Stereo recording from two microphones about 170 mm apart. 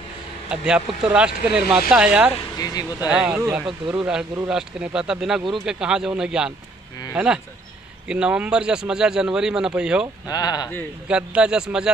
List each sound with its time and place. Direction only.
0.5 s a man's voice: 5° right (ahead or behind)
2.6 s speech: 25° left (ahead or behind)
3.0 s a man's voice: 5° right (ahead or behind)
8.1 s a man's voice: 5° right (ahead or behind)
10.2 s speech: 25° left (ahead or behind)
11.1 s a man's voice: 5° right (ahead or behind)